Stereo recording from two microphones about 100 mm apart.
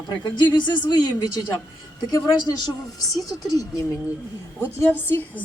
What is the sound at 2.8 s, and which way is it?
Speech, 35° left (ahead or behind).